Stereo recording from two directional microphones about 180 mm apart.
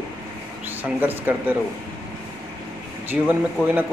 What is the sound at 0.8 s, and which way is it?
Speech, 10° right (ahead or behind).